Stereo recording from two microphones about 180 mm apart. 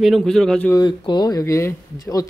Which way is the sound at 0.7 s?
25° left (ahead or behind).